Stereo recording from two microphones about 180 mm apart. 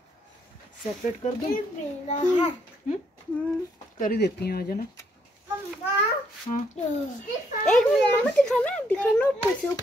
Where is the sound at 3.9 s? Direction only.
55° left (ahead or behind).